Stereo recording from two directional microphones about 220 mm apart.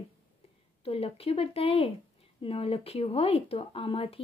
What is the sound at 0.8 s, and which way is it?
Speech, 25° left (ahead or behind).